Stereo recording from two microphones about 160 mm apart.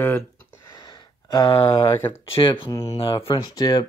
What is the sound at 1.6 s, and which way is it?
Speech, 15° left (ahead or behind).